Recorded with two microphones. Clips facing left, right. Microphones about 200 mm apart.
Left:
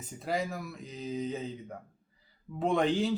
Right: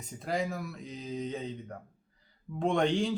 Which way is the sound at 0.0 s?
Centre (ahead or behind).